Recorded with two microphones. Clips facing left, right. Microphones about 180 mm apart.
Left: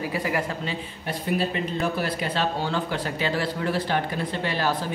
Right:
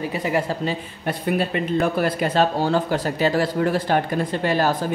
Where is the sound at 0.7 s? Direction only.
55° right (ahead or behind).